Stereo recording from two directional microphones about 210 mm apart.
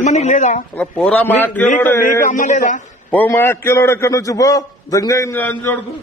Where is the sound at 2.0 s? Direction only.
40° left (ahead or behind).